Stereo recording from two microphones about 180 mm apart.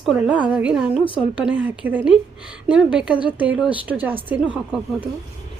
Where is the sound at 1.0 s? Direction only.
30° left (ahead or behind).